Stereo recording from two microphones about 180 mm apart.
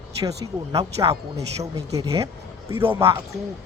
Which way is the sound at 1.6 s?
20° right (ahead or behind).